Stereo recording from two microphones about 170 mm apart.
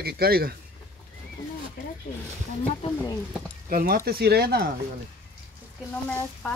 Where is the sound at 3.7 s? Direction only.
55° right (ahead or behind).